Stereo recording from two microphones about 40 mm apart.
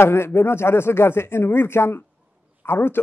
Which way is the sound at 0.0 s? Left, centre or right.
Left.